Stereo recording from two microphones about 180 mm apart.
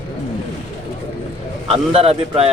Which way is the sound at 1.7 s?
35° right (ahead or behind).